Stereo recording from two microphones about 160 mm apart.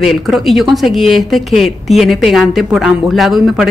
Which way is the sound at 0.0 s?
Centre (ahead or behind).